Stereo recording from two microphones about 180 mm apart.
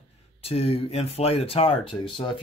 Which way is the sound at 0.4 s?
30° left (ahead or behind).